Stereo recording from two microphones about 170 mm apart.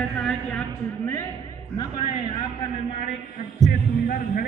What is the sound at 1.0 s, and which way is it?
Music, 15° left (ahead or behind).